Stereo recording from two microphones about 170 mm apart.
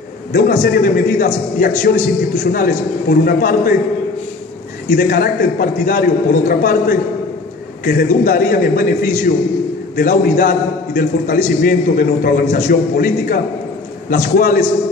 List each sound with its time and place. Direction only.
0.3 s a man's voice: 60° left (ahead or behind)
4.8 s a man's voice: 60° left (ahead or behind)